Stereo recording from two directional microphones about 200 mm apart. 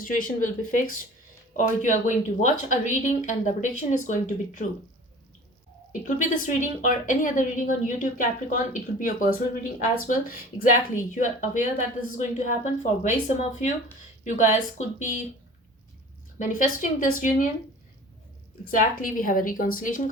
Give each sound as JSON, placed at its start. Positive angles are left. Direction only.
{"t": 0.0, "sound": "speech", "side_deg": 40}
{"t": 5.9, "sound": "speech", "side_deg": 40}
{"t": 16.4, "sound": "speech", "side_deg": 40}
{"t": 18.7, "sound": "a woman's voice", "side_deg": 45}